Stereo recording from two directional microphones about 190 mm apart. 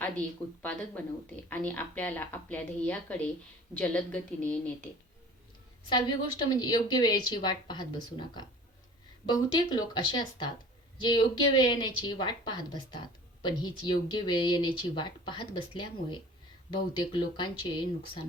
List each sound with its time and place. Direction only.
0.0 s a woman's voice: 5° left (ahead or behind)
5.9 s speech: 25° left (ahead or behind)